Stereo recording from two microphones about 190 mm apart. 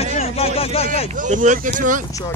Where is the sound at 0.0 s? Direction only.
35° left (ahead or behind).